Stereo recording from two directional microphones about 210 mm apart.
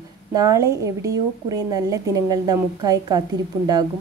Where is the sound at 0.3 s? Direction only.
15° right (ahead or behind).